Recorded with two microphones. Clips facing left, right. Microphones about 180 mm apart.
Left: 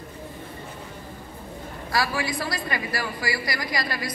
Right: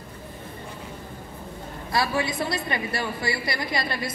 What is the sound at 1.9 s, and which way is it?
A woman's voice, 25° right (ahead or behind).